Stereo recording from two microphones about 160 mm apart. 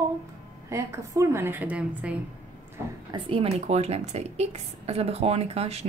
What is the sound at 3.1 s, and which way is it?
Speech, 35° right (ahead or behind).